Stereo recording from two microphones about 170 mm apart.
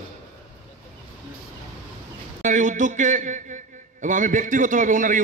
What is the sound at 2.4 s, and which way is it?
A man's voice, 45° right (ahead or behind).